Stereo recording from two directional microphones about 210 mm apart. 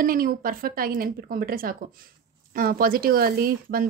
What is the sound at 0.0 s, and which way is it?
Speech, 40° right (ahead or behind).